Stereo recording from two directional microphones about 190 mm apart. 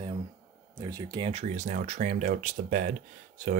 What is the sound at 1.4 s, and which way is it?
Speech, 40° right (ahead or behind).